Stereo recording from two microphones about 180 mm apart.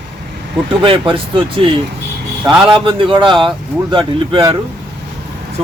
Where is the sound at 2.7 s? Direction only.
30° right (ahead or behind).